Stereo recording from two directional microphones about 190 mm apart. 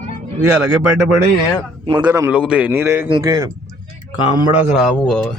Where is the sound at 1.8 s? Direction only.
20° right (ahead or behind).